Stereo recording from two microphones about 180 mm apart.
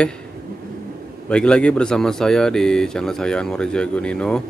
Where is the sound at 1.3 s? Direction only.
5° left (ahead or behind).